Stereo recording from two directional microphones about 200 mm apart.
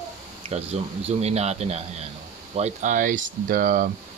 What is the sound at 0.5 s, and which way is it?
Speech, 30° right (ahead or behind).